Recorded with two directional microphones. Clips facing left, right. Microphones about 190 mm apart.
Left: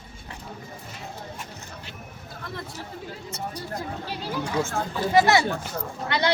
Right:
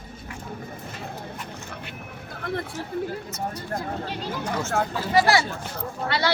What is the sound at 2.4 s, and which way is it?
Chatter, 60° right (ahead or behind).